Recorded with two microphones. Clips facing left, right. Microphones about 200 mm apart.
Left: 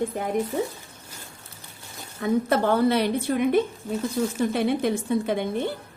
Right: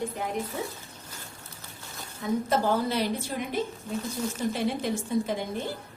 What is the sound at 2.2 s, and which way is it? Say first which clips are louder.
A woman's voice: left 4 dB; 65° left (ahead or behind).